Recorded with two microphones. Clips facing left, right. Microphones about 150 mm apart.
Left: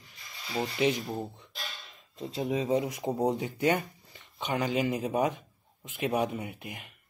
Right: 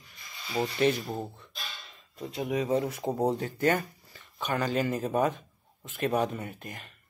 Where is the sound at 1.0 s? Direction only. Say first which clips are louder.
Even; centre (ahead or behind).